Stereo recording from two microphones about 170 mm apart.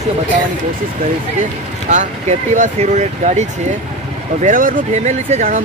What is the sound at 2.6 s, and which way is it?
Speech, 45° right (ahead or behind).